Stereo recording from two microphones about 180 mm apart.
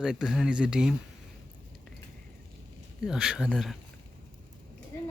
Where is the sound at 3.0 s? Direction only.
5° right (ahead or behind).